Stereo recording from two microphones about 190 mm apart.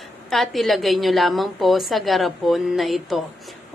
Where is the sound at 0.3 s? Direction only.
Centre (ahead or behind).